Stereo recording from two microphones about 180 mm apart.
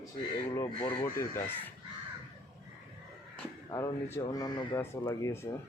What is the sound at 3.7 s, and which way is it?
Speech, 20° left (ahead or behind).